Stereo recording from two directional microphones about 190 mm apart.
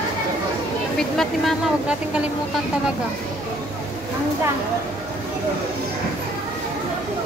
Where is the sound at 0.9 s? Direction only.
Centre (ahead or behind).